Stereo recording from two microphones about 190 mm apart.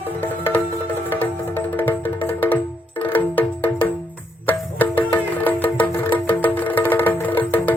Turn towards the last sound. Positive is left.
turn(degrees=10)  # may be behind; listen again after turning